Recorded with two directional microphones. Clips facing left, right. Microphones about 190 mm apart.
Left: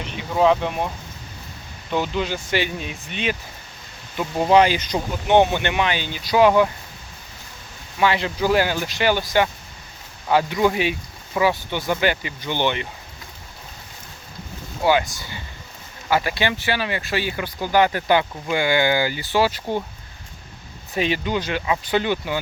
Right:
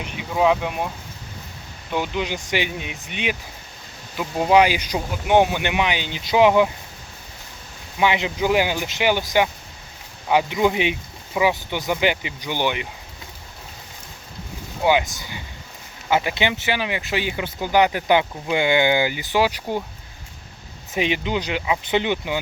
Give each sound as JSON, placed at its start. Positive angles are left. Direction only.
{"t": 0.0, "sound": "speech", "side_deg": -5}
{"t": 1.9, "sound": "speech", "side_deg": -15}
{"t": 7.9, "sound": "speech", "side_deg": -15}
{"t": 15.1, "sound": "speech", "side_deg": -20}
{"t": 20.9, "sound": "speech", "side_deg": -15}